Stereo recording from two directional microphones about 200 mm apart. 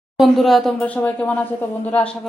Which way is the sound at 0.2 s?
Centre (ahead or behind).